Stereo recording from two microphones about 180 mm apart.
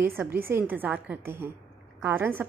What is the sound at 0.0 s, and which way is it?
A woman's voice, 10° right (ahead or behind).